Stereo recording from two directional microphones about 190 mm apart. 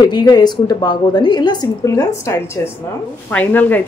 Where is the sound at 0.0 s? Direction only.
20° left (ahead or behind).